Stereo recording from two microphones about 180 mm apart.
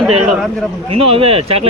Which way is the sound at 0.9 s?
30° right (ahead or behind).